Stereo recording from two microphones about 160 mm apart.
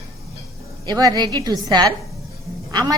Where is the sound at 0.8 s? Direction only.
25° right (ahead or behind).